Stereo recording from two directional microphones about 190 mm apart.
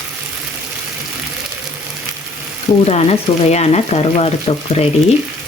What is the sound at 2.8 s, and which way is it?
Speech, 35° left (ahead or behind).